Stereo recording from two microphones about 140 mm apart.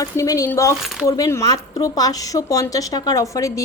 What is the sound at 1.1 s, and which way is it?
A woman's voice, 25° left (ahead or behind).